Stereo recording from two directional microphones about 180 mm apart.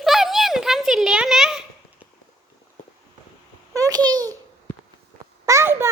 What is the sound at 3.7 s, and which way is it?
Babbling, 20° right (ahead or behind).